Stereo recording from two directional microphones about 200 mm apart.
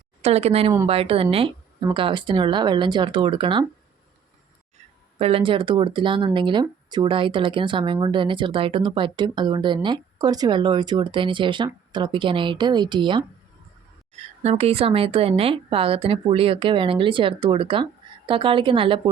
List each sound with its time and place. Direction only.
0.2 s speech: 30° right (ahead or behind)
5.2 s speech: 25° right (ahead or behind)
14.4 s speech: 30° right (ahead or behind)